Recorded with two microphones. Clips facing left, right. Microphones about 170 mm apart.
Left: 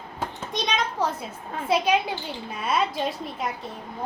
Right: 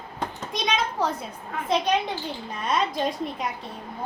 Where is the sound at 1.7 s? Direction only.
5° left (ahead or behind).